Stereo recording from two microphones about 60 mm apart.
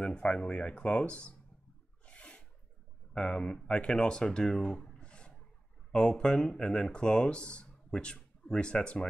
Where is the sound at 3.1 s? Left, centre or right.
Centre.